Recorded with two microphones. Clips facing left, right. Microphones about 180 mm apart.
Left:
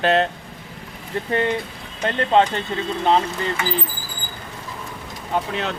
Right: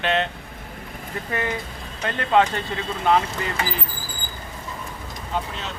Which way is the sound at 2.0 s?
25° left (ahead or behind).